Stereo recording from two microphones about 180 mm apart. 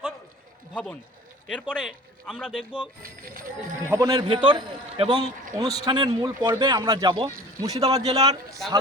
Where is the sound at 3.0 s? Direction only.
50° right (ahead or behind).